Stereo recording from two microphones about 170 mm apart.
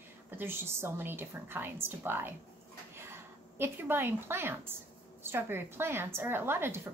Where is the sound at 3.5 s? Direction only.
15° right (ahead or behind).